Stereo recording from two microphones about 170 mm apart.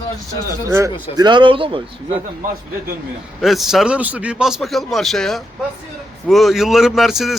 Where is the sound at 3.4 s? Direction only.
Centre (ahead or behind).